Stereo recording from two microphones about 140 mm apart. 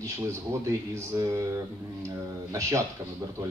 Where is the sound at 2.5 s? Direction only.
20° right (ahead or behind).